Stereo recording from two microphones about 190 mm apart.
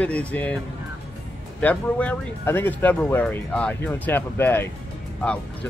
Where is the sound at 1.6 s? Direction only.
10° left (ahead or behind).